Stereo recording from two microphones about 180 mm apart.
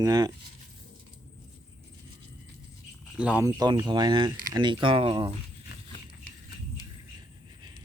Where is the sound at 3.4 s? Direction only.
20° right (ahead or behind).